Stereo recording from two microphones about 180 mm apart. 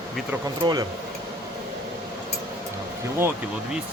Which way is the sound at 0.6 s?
25° right (ahead or behind).